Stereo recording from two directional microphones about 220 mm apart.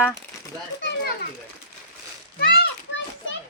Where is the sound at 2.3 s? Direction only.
45° left (ahead or behind).